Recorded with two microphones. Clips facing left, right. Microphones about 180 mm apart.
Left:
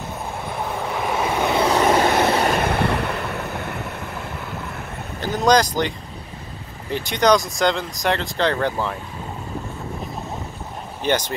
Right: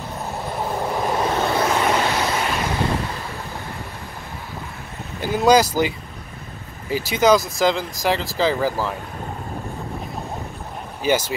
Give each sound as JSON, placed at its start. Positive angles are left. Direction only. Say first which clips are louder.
{"t": 1.0, "sound": "vehicle", "louder": "left 1 dB", "side_deg": 5}
{"t": 2.0, "sound": "vehicle", "louder": "left 4 dB", "side_deg": 55}
{"t": 5.2, "sound": "speech", "louder": "right 2 dB", "side_deg": -10}
{"t": 11.0, "sound": "speech", "louder": "right 1 dB", "side_deg": -5}